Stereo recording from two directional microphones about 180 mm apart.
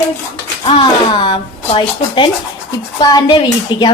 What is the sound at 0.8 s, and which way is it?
A woman's voice, 25° left (ahead or behind).